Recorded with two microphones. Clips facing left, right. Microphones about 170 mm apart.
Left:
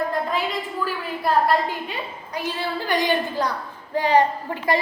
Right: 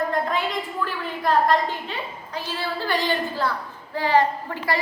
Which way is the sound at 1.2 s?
10° left (ahead or behind).